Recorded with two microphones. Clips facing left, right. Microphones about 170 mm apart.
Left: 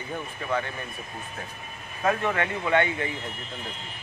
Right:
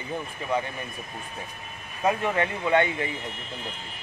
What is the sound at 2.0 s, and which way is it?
Speech, 15° right (ahead or behind).